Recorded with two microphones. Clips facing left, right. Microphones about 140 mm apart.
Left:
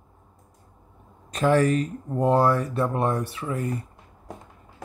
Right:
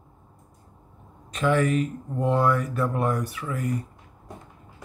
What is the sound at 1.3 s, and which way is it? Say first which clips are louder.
Speech: left 2 dB; 35° left (ahead or behind).